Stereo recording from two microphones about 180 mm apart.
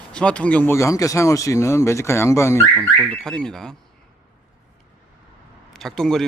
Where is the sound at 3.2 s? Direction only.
5° left (ahead or behind).